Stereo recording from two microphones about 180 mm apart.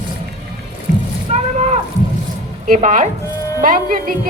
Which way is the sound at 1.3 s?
40° right (ahead or behind).